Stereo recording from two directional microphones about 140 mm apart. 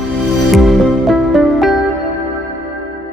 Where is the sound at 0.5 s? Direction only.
Centre (ahead or behind).